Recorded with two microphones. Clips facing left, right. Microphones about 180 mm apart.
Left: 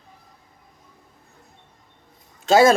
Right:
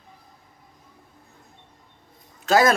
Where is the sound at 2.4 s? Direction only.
25° left (ahead or behind).